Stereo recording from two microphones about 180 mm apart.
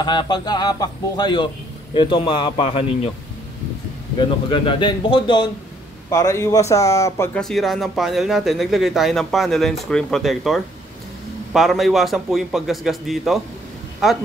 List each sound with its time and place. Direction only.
0.0 s speech: 25° left (ahead or behind)
4.5 s a man's voice: 25° left (ahead or behind)
7.3 s speech: centre (ahead or behind)